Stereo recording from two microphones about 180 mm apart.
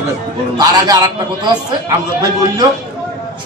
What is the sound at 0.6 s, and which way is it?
A man's voice, 20° right (ahead or behind).